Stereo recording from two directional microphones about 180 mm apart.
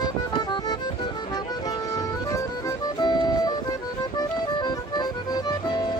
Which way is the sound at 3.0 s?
25° left (ahead or behind).